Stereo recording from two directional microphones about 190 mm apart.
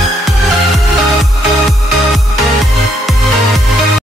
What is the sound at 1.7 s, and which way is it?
Music, centre (ahead or behind).